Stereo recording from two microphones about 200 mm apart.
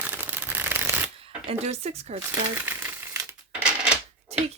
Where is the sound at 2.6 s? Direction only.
10° right (ahead or behind).